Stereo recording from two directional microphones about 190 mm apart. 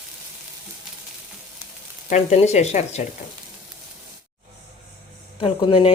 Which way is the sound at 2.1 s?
35° left (ahead or behind).